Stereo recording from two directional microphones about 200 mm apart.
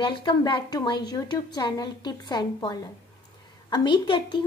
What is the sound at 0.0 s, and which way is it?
A woman's voice, 20° left (ahead or behind).